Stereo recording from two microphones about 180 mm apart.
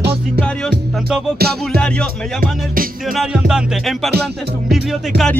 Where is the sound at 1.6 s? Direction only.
5° left (ahead or behind).